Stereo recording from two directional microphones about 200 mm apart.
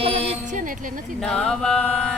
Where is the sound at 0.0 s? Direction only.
30° right (ahead or behind).